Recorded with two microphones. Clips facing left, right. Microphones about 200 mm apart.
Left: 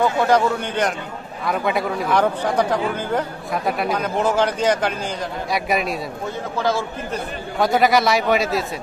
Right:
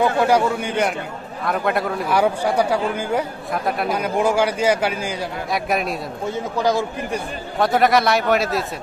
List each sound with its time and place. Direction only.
0.2 s a man's voice: 10° right (ahead or behind)
6.6 s a man's voice: 15° right (ahead or behind)
7.5 s speech: centre (ahead or behind)